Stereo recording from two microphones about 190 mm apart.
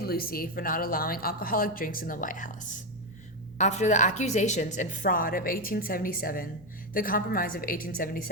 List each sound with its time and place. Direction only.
0.0 s a woman's voice: 50° left (ahead or behind)